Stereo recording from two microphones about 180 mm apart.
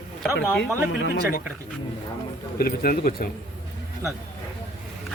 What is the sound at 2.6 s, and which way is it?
Speech, 55° left (ahead or behind).